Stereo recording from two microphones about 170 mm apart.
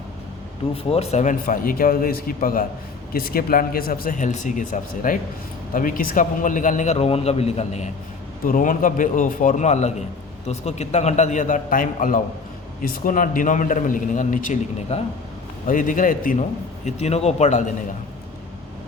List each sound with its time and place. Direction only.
0.7 s a man's voice: 35° left (ahead or behind)
8.4 s a man's voice: 55° left (ahead or behind)
16.8 s a man's voice: 40° left (ahead or behind)